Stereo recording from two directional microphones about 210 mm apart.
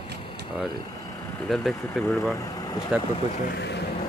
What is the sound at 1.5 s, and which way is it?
Speech, centre (ahead or behind).